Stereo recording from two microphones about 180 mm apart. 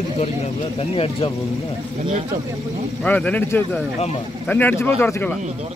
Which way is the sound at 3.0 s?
10° left (ahead or behind).